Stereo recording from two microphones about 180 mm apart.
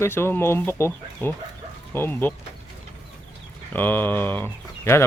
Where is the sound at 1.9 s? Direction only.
10° left (ahead or behind).